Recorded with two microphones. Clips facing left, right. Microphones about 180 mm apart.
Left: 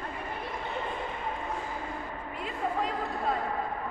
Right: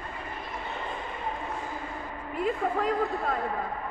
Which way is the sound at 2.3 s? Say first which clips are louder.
Right 5 dB; 50° right (ahead or behind).